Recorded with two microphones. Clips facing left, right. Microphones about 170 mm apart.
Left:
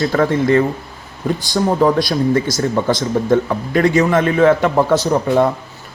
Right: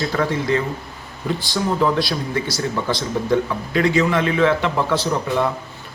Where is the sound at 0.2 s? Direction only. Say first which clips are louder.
Left 7 dB; 50° left (ahead or behind).